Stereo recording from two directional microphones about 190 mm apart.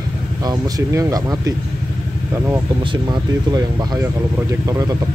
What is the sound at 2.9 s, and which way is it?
Speech, 20° right (ahead or behind).